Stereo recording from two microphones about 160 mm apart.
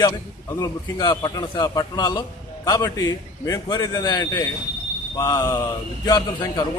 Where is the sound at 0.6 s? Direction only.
25° left (ahead or behind).